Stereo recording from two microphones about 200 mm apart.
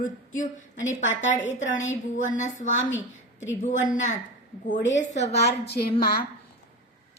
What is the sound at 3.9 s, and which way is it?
A woman's voice, 40° left (ahead or behind).